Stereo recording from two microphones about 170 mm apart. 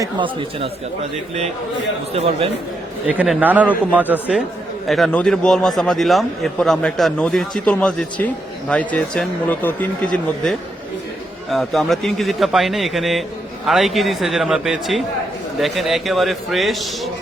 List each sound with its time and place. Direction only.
0.0 s speech: 30° right (ahead or behind)
2.2 s speech: 35° right (ahead or behind)
3.1 s a man's voice: 10° right (ahead or behind)